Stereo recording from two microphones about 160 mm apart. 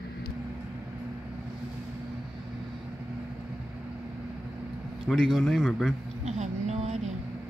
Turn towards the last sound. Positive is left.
turn(degrees=-45)  # may be behind; listen again after turning